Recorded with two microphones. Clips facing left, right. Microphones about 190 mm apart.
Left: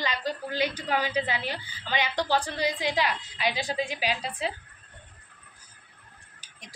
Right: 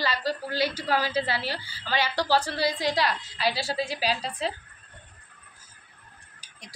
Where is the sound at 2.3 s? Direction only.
40° right (ahead or behind).